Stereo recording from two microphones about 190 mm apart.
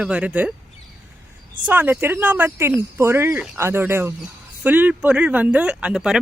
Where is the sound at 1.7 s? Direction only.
10° right (ahead or behind).